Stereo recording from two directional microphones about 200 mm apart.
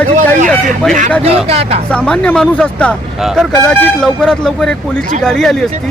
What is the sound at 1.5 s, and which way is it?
Speech, 30° right (ahead or behind).